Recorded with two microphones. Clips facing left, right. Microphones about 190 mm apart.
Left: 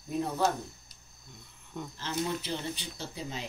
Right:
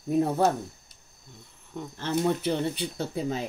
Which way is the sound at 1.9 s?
55° right (ahead or behind).